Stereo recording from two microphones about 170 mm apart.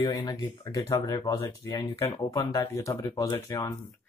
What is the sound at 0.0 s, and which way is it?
Speech, 25° left (ahead or behind).